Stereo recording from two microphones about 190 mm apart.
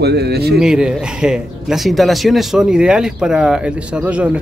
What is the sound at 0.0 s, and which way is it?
Speech, 60° right (ahead or behind).